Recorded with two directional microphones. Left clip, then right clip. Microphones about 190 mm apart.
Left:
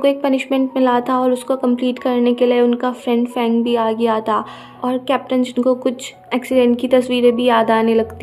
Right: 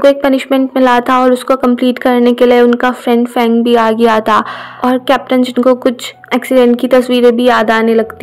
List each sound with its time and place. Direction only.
0.0 s speech: 30° right (ahead or behind)